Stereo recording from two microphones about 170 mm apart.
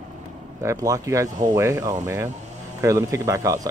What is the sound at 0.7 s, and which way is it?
Speech, 20° right (ahead or behind).